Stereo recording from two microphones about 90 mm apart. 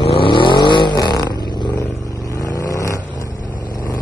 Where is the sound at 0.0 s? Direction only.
85° left; by 0.9 s 60° left (ahead or behind).